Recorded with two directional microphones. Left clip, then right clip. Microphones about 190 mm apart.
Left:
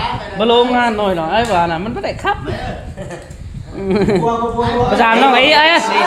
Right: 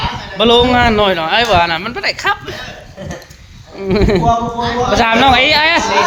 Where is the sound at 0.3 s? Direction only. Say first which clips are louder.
Right 2 dB; 25° right (ahead or behind).